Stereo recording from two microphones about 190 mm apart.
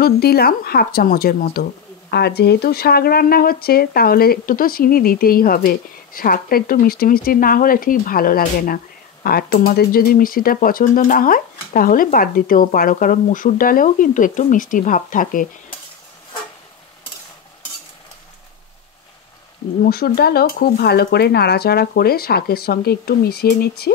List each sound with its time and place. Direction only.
0.0 s a woman's voice: 55° left (ahead or behind)
19.8 s speech: 55° left (ahead or behind)